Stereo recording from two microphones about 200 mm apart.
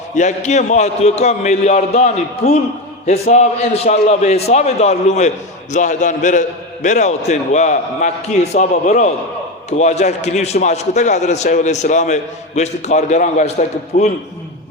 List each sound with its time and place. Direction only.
0.2 s a man's voice: 35° left (ahead or behind)